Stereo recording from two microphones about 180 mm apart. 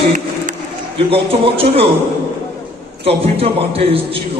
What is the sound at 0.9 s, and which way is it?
Speech, 30° right (ahead or behind).